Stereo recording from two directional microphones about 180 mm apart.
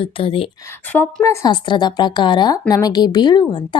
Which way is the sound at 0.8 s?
10° left (ahead or behind).